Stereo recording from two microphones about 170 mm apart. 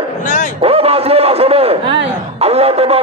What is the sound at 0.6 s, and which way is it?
A man's voice, 35° right (ahead or behind).